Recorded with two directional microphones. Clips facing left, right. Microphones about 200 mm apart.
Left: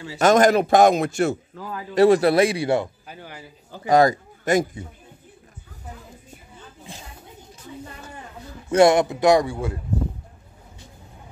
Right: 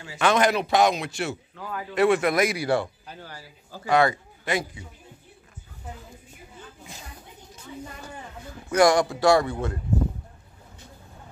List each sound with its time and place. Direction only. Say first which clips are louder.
0.1 s a man's voice: left 6 dB; 45° left (ahead or behind); by 3.9 s 20° left (ahead or behind)
3.9 s a man's voice: left 4 dB; 40° left (ahead or behind)
8.6 s a man's voice: left 4 dB; 25° left (ahead or behind)